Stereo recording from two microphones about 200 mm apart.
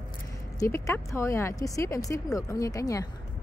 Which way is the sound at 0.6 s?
15° left (ahead or behind).